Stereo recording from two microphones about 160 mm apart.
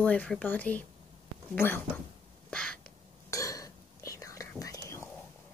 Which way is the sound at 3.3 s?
20° left (ahead or behind).